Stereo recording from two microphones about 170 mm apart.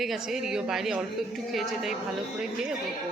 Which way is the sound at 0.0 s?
Centre (ahead or behind).